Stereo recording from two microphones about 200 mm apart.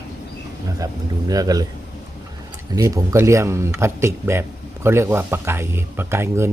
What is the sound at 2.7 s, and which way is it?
A man's voice, 15° right (ahead or behind).